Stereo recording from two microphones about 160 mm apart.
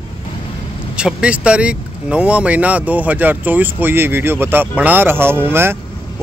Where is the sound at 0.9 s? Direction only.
5° right (ahead or behind).